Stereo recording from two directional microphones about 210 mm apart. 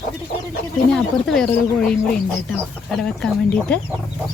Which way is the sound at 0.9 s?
Centre (ahead or behind).